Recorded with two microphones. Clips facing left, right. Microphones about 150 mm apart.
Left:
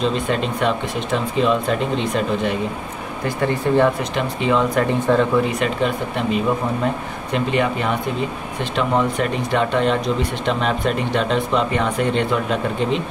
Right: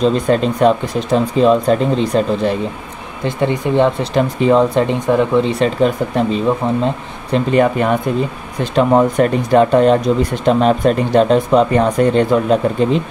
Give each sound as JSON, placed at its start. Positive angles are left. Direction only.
{"t": 0.0, "sound": "speech", "side_deg": -40}
{"t": 3.3, "sound": "speech", "side_deg": -20}
{"t": 4.0, "sound": "speech", "side_deg": -40}
{"t": 4.7, "sound": "speech", "side_deg": -15}
{"t": 5.4, "sound": "speech", "side_deg": -30}